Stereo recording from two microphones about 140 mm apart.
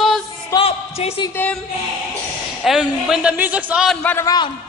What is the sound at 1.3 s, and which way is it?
Speech, 10° left (ahead or behind).